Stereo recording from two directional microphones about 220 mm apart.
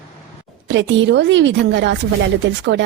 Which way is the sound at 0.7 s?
55° right (ahead or behind).